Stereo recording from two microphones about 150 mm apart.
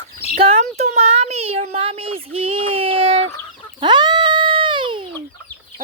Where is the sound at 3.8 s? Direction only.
30° right (ahead or behind).